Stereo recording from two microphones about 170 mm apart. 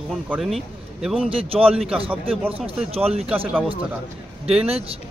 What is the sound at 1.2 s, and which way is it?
Speech, 35° right (ahead or behind).